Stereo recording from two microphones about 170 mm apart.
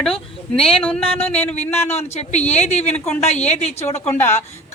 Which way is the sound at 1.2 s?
10° left (ahead or behind).